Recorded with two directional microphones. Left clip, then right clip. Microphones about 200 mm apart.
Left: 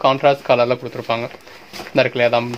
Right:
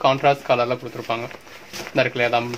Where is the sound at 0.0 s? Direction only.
35° left (ahead or behind).